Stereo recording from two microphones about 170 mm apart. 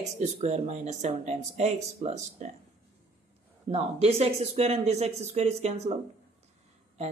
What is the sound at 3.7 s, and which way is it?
Speech, 35° right (ahead or behind).